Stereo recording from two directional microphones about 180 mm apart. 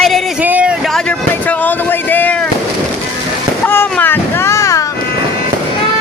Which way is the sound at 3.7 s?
10° left (ahead or behind).